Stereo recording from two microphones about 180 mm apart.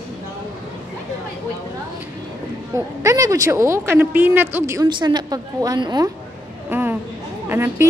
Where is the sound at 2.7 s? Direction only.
20° right (ahead or behind).